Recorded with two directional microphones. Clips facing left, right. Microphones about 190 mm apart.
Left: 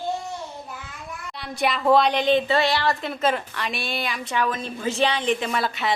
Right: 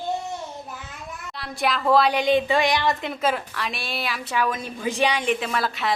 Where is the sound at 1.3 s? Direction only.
Centre (ahead or behind).